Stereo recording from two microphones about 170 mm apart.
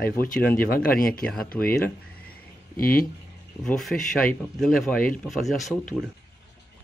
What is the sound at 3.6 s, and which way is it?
Speech, 5° left (ahead or behind).